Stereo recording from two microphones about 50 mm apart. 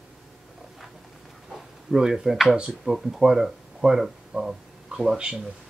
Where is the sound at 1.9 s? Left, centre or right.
Centre.